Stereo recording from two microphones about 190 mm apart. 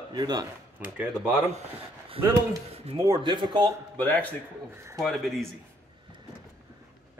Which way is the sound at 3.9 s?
10° left (ahead or behind).